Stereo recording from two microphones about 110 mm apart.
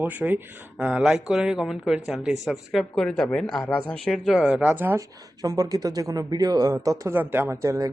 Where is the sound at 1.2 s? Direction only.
5° right (ahead or behind).